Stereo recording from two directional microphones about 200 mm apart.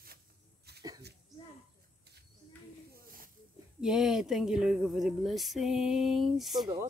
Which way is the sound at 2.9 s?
45° right (ahead or behind).